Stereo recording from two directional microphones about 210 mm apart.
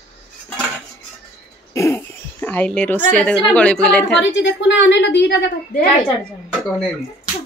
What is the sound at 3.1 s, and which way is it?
A woman's voice, 5° left (ahead or behind).